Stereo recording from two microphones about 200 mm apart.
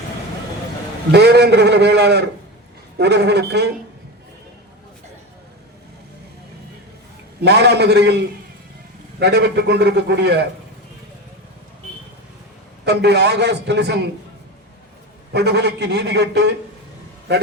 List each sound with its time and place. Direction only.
1.1 s a man's voice: 55° right (ahead or behind)
7.4 s a man's voice: 55° right (ahead or behind)
12.8 s a man's voice: 55° right (ahead or behind)
15.3 s a man's voice: 55° right (ahead or behind)